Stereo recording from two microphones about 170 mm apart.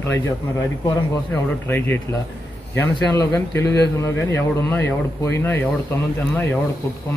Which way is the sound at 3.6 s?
80° left.